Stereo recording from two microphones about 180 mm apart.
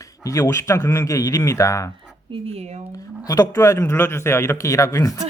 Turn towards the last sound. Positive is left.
turn(degrees=15)  # may be behind; listen again after turning